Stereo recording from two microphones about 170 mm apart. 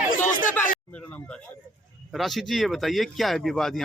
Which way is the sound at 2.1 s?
Centre (ahead or behind).